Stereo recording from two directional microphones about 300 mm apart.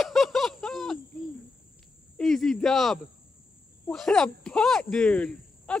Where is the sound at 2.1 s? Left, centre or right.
Centre.